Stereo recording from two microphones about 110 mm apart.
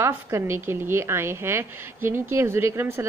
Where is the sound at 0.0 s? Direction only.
25° right (ahead or behind).